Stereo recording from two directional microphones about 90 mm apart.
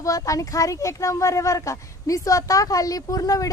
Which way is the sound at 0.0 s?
40° left (ahead or behind).